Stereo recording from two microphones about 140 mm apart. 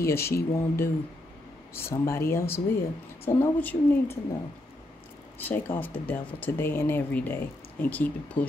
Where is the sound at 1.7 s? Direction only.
20° left (ahead or behind).